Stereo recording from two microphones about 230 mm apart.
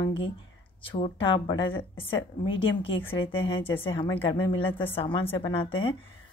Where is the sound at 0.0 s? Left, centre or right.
Left.